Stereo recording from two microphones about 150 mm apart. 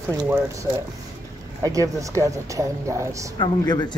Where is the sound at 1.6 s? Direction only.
20° right (ahead or behind).